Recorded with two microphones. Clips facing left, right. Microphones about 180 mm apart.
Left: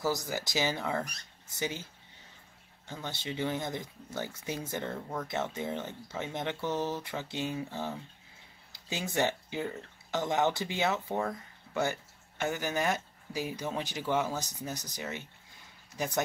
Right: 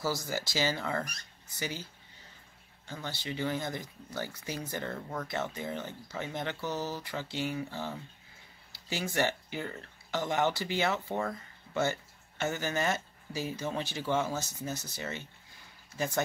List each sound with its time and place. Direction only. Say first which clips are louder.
0.0 s speech: left 1 dB; 20° left (ahead or behind)
2.9 s speech: even; 20° left (ahead or behind)
4.9 s speech: left 1 dB; 5° left (ahead or behind)
5.3 s speech: left 2 dB; 20° left (ahead or behind)